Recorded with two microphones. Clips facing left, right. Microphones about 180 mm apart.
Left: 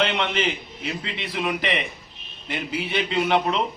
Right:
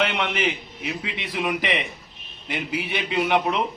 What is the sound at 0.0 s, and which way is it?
A man's voice, 10° right (ahead or behind).